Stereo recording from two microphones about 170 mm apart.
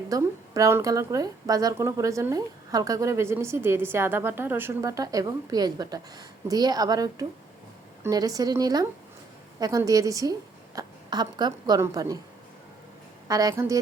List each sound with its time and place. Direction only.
0.1 s a woman's voice: 20° right (ahead or behind)
13.2 s a woman's voice: 20° right (ahead or behind)